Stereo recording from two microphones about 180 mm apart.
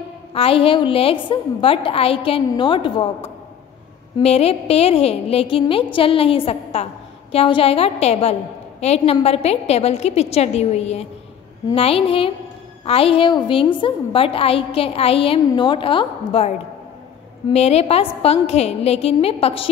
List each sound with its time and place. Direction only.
0.3 s a woman's voice: 30° left (ahead or behind)
4.2 s a woman's voice: 35° left (ahead or behind)